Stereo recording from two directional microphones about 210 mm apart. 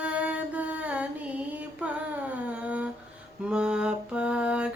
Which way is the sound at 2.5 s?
5° right (ahead or behind).